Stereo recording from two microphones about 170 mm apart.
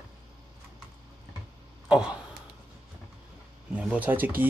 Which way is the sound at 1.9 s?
5° right (ahead or behind).